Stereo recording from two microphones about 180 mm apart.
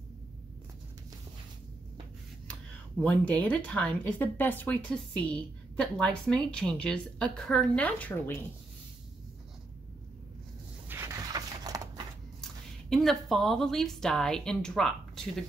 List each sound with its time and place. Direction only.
3.0 s speech: 10° left (ahead or behind)
10.9 s a sound: 15° right (ahead or behind)
12.9 s speech: centre (ahead or behind)